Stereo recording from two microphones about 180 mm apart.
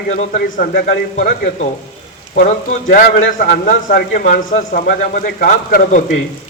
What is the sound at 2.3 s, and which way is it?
A man's voice, 45° left (ahead or behind).